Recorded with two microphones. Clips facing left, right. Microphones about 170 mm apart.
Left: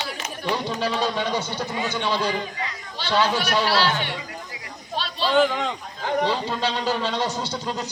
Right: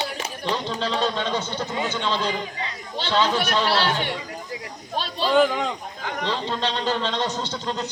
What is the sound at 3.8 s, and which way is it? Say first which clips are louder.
Speech: even; 50° right (ahead or behind).